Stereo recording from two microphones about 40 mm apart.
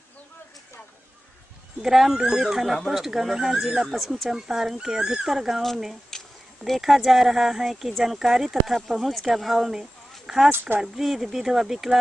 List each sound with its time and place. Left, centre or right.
1.8 s speech: centre
6.1 s a sound: centre
6.6 s speech: centre
9.8 s a sound: centre
10.5 s speech: right
10.8 s speech: centre